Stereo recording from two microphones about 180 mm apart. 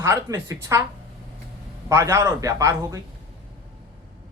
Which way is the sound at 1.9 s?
15° right (ahead or behind).